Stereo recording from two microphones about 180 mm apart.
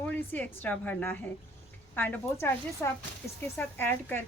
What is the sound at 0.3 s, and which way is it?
A woman's voice, 10° left (ahead or behind).